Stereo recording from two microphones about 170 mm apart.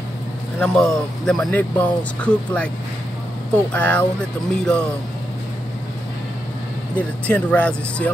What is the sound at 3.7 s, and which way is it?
Speech, 10° left (ahead or behind).